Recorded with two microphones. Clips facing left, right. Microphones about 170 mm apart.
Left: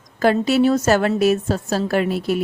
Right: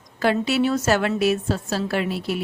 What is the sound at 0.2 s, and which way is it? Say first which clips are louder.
Speech: left 4 dB; 45° left (ahead or behind).